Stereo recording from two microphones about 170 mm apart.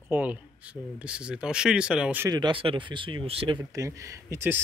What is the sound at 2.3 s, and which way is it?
Speech, 25° right (ahead or behind).